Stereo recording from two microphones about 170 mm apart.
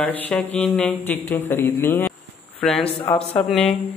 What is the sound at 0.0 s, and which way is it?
Mantra, 10° left (ahead or behind).